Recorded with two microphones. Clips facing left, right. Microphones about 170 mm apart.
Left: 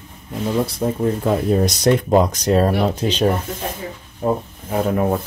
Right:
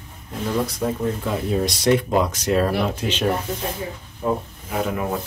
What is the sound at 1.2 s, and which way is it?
Speech, 45° left (ahead or behind).